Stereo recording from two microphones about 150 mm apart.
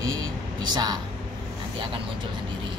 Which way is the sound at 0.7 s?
30° right (ahead or behind).